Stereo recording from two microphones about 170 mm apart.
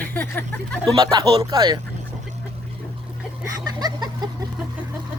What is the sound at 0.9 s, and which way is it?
Speech, 30° right (ahead or behind).